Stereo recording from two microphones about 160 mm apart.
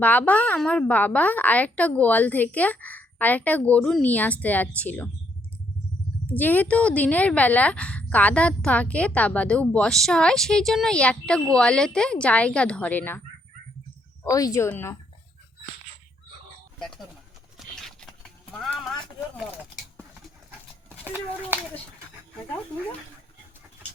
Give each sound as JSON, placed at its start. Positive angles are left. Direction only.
{"t": 0.0, "sound": "speech", "side_deg": 10}
{"t": 6.3, "sound": "speech", "side_deg": 10}
{"t": 14.3, "sound": "speech", "side_deg": 20}
{"t": 16.8, "sound": "speech", "side_deg": 5}
{"t": 17.6, "sound": "patter", "side_deg": 0}
{"t": 18.5, "sound": "clip-clop", "side_deg": 0}
{"t": 21.0, "sound": "a child's voice", "side_deg": -10}